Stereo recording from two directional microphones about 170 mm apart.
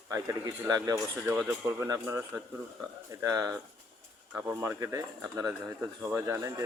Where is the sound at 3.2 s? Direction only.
20° right (ahead or behind).